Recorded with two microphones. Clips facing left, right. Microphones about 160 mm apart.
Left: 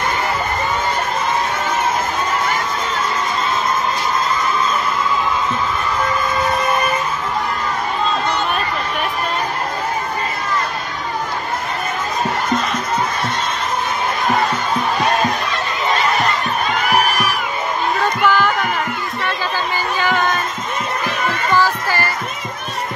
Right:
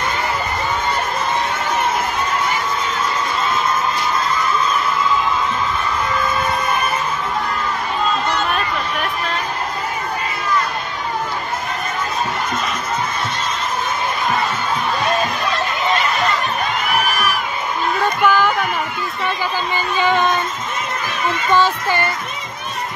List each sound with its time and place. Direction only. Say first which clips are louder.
18.2 s a sound: right 1 dB; 15° right (ahead or behind)
20.0 s child singing: right 3 dB; 20° right (ahead or behind)
21.5 s music: right 1 dB; 20° right (ahead or behind)